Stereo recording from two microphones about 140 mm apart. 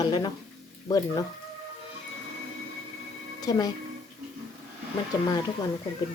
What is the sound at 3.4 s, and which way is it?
Speech, 25° left (ahead or behind).